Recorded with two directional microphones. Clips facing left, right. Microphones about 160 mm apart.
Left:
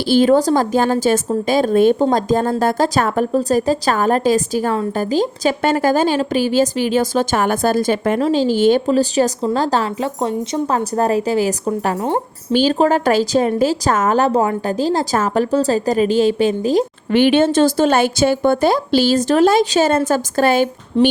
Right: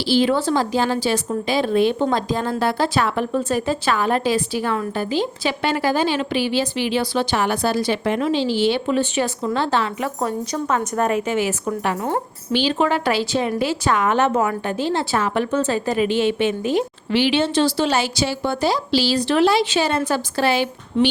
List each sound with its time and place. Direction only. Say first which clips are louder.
0.0 s a woman's voice: left 5 dB; 50° left (ahead or behind)
11.9 s a woman's voice: left 4 dB; 25° left (ahead or behind)
12.5 s a woman's voice: left 5 dB; 40° left (ahead or behind)
17.2 s a woman's voice: left 6 dB; 50° left (ahead or behind)